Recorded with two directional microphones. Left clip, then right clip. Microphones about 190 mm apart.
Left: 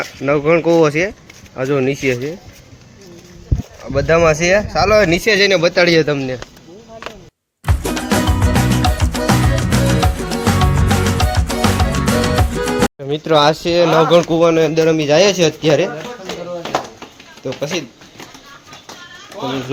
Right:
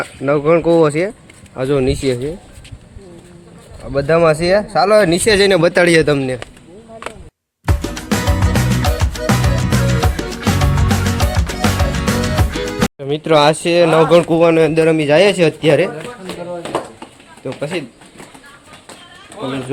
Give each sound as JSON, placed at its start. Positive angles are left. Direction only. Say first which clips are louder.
{"t": 0.0, "sound": "speech", "louder": "even", "side_deg": 0}
{"t": 1.5, "sound": "speech", "louder": "right 1 dB", "side_deg": -15}
{"t": 3.9, "sound": "speech", "louder": "even", "side_deg": -5}
{"t": 5.2, "sound": "speech", "louder": "right 1 dB", "side_deg": -30}
{"t": 5.5, "sound": "speech", "louder": "right 1 dB", "side_deg": -55}
{"t": 6.2, "sound": "speech", "louder": "right 2 dB", "side_deg": -25}
{"t": 7.6, "sound": "music", "louder": "left 2 dB", "side_deg": 0}
{"t": 17.4, "sound": "speech", "louder": "left 1 dB", "side_deg": 5}